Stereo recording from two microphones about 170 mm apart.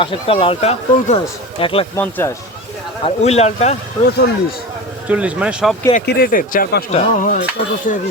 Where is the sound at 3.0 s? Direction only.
40° left (ahead or behind).